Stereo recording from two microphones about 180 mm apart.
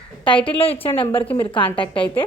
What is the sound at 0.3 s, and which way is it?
A woman's voice, 30° left (ahead or behind).